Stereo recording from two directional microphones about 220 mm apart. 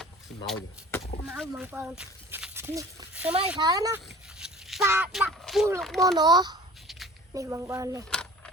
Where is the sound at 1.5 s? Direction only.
10° right (ahead or behind).